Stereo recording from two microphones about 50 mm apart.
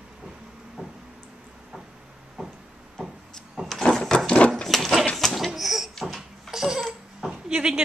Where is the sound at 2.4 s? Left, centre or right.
Centre.